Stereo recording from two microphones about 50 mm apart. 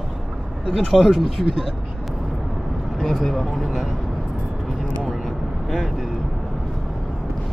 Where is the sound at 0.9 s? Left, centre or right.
Centre.